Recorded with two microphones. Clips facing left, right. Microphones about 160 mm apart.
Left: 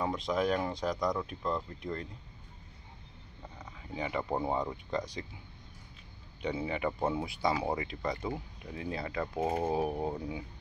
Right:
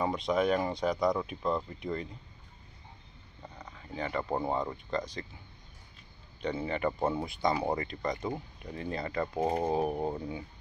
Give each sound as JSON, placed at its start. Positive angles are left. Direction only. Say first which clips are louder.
{"t": 0.0, "sound": "speech", "louder": "right 2 dB", "side_deg": 0}
{"t": 3.5, "sound": "a sound", "louder": "even", "side_deg": 10}
{"t": 4.3, "sound": "speech", "louder": "right 1 dB", "side_deg": 5}
{"t": 6.4, "sound": "speech", "louder": "right 2 dB", "side_deg": 10}